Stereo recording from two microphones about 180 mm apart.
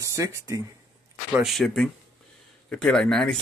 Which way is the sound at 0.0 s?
15° right (ahead or behind).